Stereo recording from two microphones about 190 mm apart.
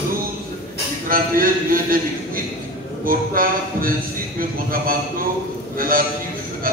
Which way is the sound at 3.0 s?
50° right (ahead or behind).